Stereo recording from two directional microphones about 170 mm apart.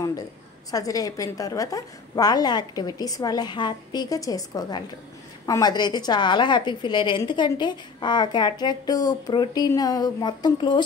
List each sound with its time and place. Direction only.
0.7 s a woman's voice: 20° left (ahead or behind)